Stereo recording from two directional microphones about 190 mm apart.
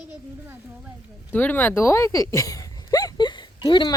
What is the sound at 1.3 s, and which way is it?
Speech, 10° left (ahead or behind).